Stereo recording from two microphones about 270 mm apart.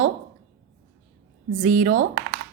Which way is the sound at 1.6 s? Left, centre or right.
Right.